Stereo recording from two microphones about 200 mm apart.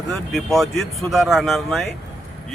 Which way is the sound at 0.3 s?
Centre (ahead or behind).